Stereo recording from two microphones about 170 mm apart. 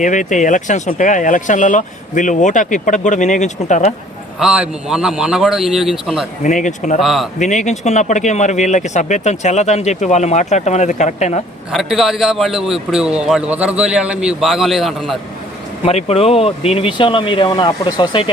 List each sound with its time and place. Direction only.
0.0 s speech: 45° left (ahead or behind)
4.4 s a man's voice: 5° right (ahead or behind)
6.4 s speech: 50° left (ahead or behind)
7.0 s a man's voice: centre (ahead or behind)
7.3 s speech: 45° left (ahead or behind)
11.7 s a man's voice: centre (ahead or behind)
15.8 s speech: 35° left (ahead or behind)